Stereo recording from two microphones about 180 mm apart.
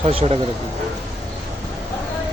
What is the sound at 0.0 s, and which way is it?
Speech, 35° right (ahead or behind).